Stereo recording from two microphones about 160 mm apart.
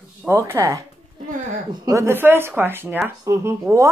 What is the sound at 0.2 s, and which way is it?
A woman's voice, 15° right (ahead or behind).